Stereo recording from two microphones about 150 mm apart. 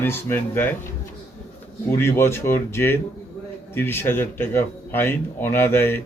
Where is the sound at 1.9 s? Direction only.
15° left (ahead or behind).